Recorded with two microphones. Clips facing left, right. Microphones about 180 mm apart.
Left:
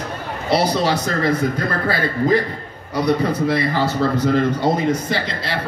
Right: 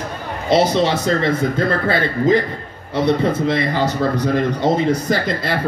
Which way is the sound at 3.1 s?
25° right (ahead or behind).